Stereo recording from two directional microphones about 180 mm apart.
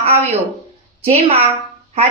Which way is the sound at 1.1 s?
35° right (ahead or behind).